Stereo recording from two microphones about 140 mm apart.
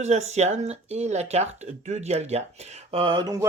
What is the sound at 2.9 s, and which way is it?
Mantra, 40° right (ahead or behind).